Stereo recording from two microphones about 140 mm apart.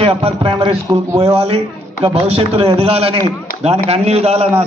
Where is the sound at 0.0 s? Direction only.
40° right (ahead or behind).